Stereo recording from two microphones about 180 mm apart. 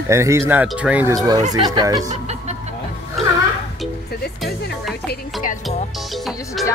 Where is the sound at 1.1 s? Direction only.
20° right (ahead or behind).